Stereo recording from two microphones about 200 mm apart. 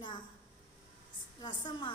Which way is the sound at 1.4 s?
20° left (ahead or behind).